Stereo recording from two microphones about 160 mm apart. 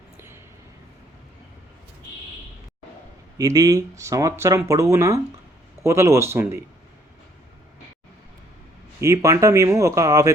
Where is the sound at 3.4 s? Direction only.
20° right (ahead or behind).